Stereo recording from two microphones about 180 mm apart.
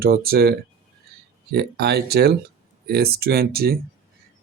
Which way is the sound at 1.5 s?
60° right (ahead or behind).